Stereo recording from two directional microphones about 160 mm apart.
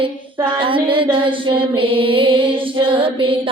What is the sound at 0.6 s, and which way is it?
Mantra, 30° right (ahead or behind).